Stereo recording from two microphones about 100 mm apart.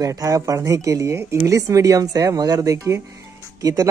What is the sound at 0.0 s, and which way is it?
Speech, 35° right (ahead or behind).